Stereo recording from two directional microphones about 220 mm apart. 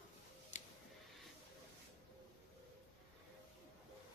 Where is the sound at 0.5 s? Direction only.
35° left (ahead or behind).